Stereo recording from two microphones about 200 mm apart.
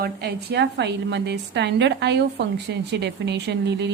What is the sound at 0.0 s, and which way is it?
Speech, 55° right (ahead or behind).